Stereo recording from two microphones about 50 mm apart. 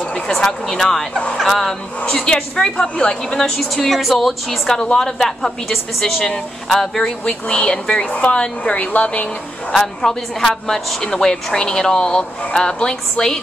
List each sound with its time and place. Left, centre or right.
0.0 s speech: centre
2.0 s a woman's voice: left
3.7 s a woman's voice: centre
7.2 s a woman's voice: centre
9.7 s a woman's voice: centre